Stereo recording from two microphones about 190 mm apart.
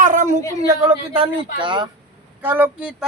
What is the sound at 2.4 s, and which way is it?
Speech, 10° right (ahead or behind).